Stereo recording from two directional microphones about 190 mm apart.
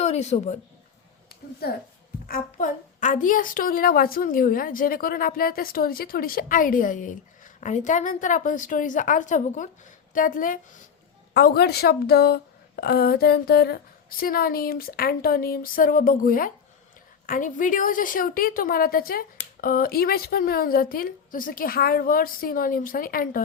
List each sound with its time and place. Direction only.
0.0 s a woman's voice: 35° left (ahead or behind)
1.6 s a woman's voice: 55° left (ahead or behind)